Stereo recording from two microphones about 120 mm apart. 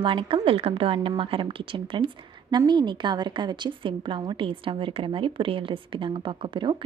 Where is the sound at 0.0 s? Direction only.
45° right (ahead or behind).